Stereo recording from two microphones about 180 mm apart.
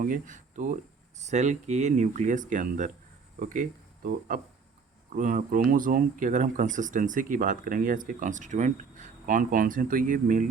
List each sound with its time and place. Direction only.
0.0 s speech: 45° right (ahead or behind)